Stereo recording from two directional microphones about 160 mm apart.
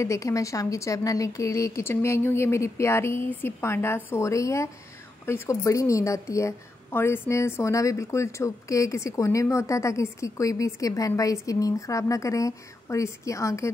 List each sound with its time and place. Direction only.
0.0 s a woman's voice: 20° left (ahead or behind)